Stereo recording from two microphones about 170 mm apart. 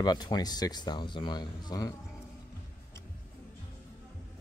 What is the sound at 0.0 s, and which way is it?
Speech, 25° left (ahead or behind).